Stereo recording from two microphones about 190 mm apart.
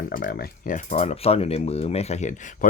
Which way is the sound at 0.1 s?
50° left (ahead or behind).